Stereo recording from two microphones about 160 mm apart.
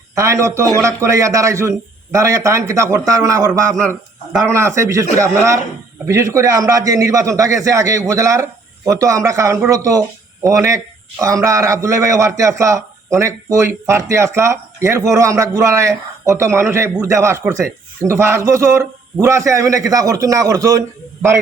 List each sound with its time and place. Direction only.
0.1 s a man's voice: 20° right (ahead or behind)